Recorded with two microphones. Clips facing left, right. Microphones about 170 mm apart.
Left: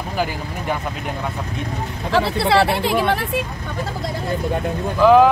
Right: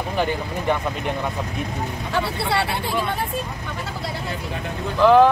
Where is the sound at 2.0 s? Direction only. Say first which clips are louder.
Left 7 dB; 90° left.